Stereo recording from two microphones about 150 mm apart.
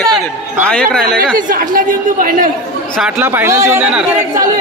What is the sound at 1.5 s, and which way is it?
A woman's voice, 65° right (ahead or behind).